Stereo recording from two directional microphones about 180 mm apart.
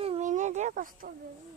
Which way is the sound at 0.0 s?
40° right (ahead or behind).